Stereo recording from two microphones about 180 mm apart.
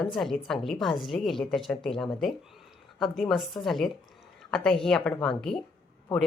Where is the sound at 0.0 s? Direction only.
Centre (ahead or behind).